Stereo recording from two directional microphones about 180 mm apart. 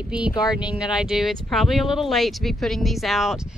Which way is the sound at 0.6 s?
5° right (ahead or behind).